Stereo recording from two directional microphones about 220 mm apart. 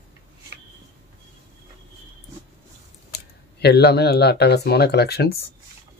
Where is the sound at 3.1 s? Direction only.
50° left (ahead or behind).